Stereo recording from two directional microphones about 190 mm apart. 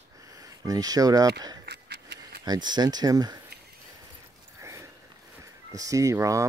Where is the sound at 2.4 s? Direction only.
20° right (ahead or behind).